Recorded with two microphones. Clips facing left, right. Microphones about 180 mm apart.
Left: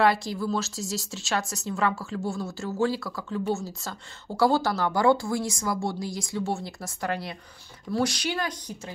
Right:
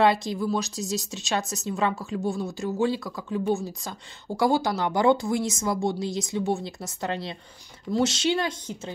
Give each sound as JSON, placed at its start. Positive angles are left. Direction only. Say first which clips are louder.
{"t": 0.0, "sound": "speech", "louder": "right 1 dB", "side_deg": -20}